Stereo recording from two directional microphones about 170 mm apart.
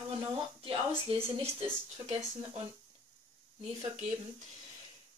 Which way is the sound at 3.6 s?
40° right (ahead or behind).